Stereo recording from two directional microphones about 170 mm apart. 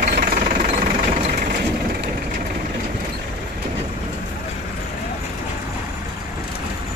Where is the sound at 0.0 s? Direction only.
50° right (ahead or behind).